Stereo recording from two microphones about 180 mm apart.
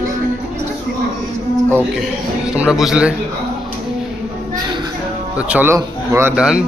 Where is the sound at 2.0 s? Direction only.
5° right (ahead or behind).